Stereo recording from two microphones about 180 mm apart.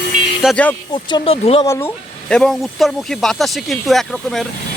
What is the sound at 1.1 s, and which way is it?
Speech, 35° left (ahead or behind).